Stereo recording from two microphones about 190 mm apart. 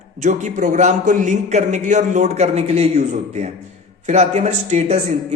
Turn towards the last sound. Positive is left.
turn(degrees=-35)  # may be behind; listen again after turning